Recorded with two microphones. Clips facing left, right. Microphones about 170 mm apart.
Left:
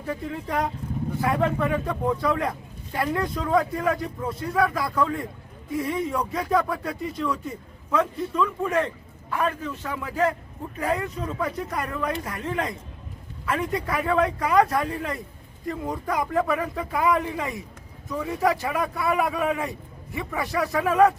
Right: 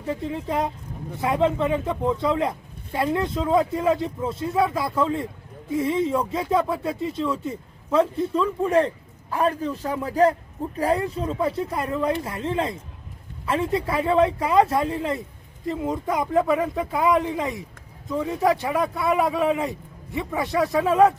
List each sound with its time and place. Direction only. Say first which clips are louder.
0.0 s a man's voice: right 3 dB; 25° right (ahead or behind)